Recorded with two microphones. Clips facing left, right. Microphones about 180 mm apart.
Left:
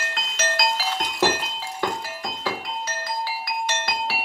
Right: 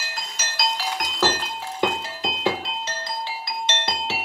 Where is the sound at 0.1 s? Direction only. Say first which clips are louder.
Left 10 dB; 60° left (ahead or behind).